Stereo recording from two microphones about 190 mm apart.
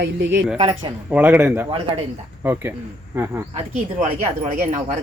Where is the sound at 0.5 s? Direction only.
25° right (ahead or behind).